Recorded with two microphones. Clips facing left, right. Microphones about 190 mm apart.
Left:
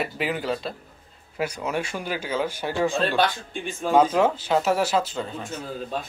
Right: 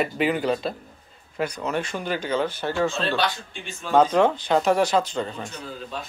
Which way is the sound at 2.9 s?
50° left (ahead or behind).